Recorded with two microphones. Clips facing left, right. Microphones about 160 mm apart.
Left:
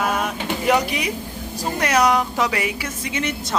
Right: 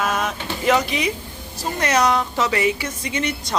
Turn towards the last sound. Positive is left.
turn(degrees=5)  # may be behind; listen again after turning